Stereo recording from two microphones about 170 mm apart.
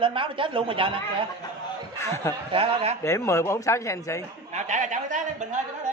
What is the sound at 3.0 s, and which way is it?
Speech, 15° left (ahead or behind).